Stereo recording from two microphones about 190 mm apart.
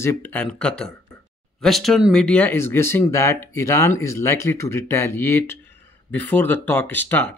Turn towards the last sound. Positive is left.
turn(degrees=10)  # may be behind; listen again after turning